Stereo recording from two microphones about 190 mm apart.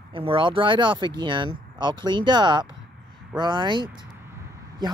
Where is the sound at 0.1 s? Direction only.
30° right (ahead or behind).